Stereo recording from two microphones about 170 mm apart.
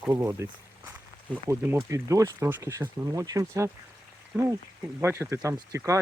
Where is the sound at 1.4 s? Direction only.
15° right (ahead or behind).